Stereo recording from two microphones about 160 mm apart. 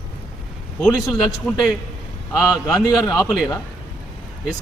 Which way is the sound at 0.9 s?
20° left (ahead or behind).